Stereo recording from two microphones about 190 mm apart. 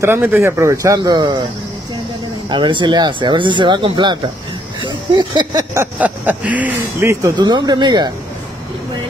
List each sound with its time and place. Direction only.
0.0 s speech: 10° right (ahead or behind)
2.5 s speech: 25° right (ahead or behind)
4.8 s a sound: 25° right (ahead or behind)
5.9 s speech: 10° right (ahead or behind); by 8.1 s 25° right (ahead or behind)